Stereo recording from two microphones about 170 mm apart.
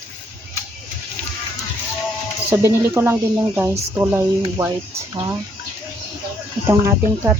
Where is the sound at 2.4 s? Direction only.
15° right (ahead or behind).